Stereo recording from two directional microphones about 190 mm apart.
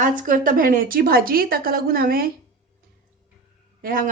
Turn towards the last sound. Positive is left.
turn(degrees=-45)  # may be behind; listen again after turning